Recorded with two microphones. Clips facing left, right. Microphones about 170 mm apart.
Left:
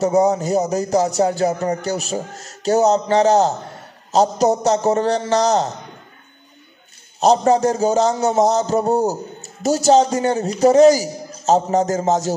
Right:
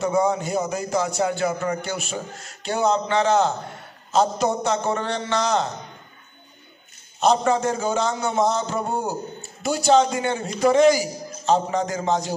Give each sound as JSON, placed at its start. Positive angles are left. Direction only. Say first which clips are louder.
{"t": 0.0, "sound": "speech", "louder": "left 5 dB", "side_deg": 40}
{"t": 7.2, "sound": "a man's voice", "louder": "left 5 dB", "side_deg": 40}